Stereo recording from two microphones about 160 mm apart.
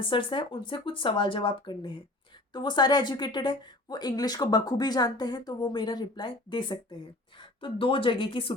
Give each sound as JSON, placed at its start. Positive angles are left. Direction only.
{"t": 0.0, "sound": "a woman's voice", "side_deg": 30}